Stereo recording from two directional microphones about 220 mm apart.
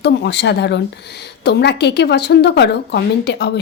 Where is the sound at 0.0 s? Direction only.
50° left (ahead or behind).